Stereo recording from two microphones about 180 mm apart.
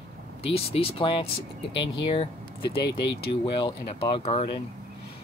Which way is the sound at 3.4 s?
25° left (ahead or behind).